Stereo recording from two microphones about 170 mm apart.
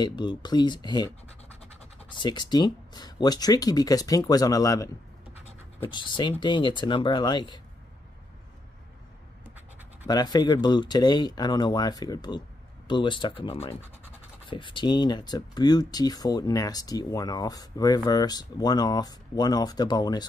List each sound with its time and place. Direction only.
0.0 s speech: 25° left (ahead or behind)
5.3 s scratch: 40° left (ahead or behind)
5.9 s speech: 25° left (ahead or behind)
10.0 s speech: 25° left (ahead or behind)